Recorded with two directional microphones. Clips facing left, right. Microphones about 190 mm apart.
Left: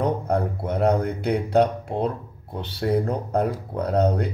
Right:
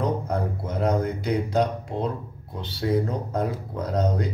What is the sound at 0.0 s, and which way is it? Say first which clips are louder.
Speech: left 3 dB; 60° left (ahead or behind).